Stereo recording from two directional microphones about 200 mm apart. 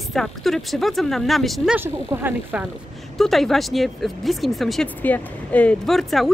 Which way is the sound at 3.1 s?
Centre (ahead or behind).